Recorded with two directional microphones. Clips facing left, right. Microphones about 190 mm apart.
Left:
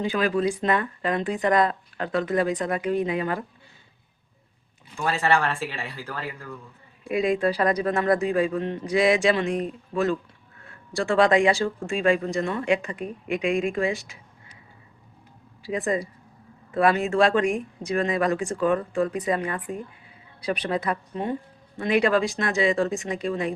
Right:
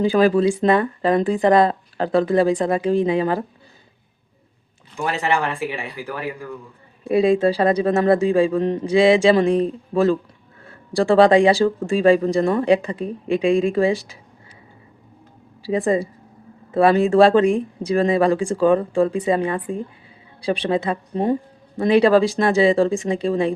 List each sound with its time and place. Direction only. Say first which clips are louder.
0.0 s speech: right 8 dB; 35° right (ahead or behind)
4.9 s speech: right 2 dB; 15° right (ahead or behind)
7.0 s speech: right 7 dB; 30° right (ahead or behind)
15.6 s speech: right 7 dB; 30° right (ahead or behind)